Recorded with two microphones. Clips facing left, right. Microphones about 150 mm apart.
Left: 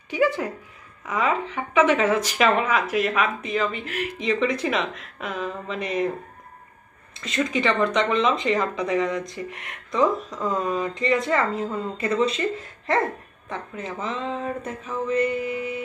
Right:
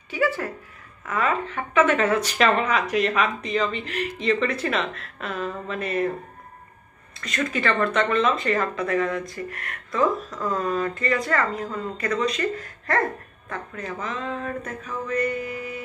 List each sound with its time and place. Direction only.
0.1 s a woman's voice: 15° left (ahead or behind)
7.4 s speech: 15° left (ahead or behind)